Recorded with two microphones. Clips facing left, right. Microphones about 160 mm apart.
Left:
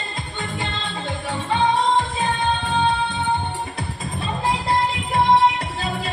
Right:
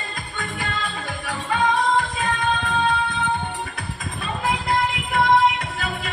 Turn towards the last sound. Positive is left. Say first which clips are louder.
# left 1 dB
turn(degrees=30)  # may be behind; listen again after turning